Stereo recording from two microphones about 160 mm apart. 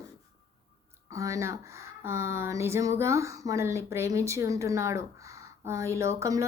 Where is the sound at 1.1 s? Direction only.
20° right (ahead or behind).